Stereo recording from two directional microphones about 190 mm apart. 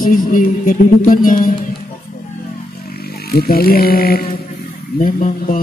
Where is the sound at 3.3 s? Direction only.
55° left (ahead or behind).